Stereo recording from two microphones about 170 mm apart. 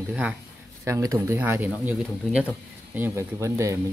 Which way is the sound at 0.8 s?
20° right (ahead or behind).